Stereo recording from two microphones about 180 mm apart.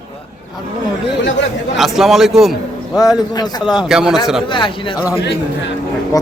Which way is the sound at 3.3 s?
25° left (ahead or behind).